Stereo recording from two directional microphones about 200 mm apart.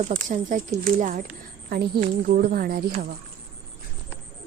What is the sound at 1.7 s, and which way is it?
A woman's voice, 50° right (ahead or behind).